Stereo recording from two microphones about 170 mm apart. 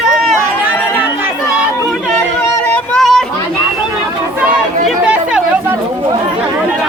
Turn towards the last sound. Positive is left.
turn(degrees=-5)  # may be behind; listen again after turning